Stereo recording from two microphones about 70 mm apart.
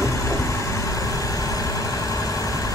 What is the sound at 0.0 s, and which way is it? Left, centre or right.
Vehicle, left.